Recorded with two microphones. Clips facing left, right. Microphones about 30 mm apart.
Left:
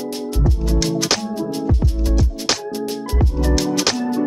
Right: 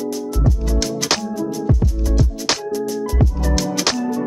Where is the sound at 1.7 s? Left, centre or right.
Left.